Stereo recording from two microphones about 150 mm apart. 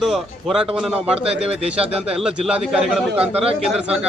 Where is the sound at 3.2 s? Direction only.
40° right (ahead or behind).